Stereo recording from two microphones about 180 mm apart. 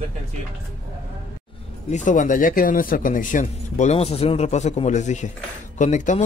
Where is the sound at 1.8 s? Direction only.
40° left (ahead or behind).